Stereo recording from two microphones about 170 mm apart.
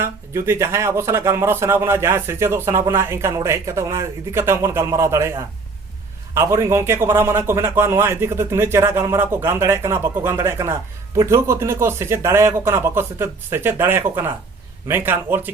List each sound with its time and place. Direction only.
0.0 s speech: 15° right (ahead or behind)
6.3 s speech: 15° right (ahead or behind)